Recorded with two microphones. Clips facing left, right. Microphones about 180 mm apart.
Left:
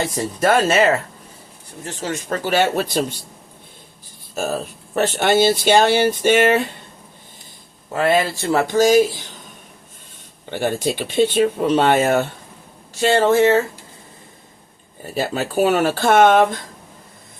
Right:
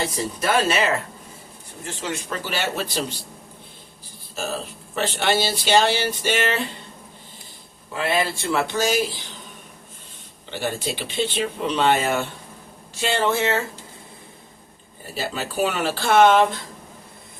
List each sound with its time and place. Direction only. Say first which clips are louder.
0.3 s speech: left 5 dB; 50° left (ahead or behind)
2.0 s speech: left 5 dB; 45° left (ahead or behind)
4.4 s speech: left 5 dB; 50° left (ahead or behind)
7.9 s speech: left 6 dB; 45° left (ahead or behind)
10.5 s speech: left 6 dB; 50° left (ahead or behind)
15.1 s speech: left 6 dB; 50° left (ahead or behind)